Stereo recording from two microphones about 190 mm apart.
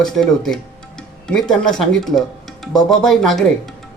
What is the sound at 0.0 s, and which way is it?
Speech, centre (ahead or behind).